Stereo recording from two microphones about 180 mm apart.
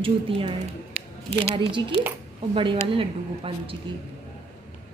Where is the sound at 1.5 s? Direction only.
25° right (ahead or behind).